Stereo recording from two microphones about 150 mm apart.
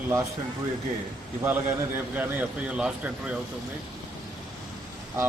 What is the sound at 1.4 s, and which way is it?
A man's voice, 10° right (ahead or behind).